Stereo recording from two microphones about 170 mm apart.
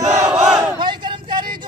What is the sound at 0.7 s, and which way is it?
Battle cry, 25° right (ahead or behind).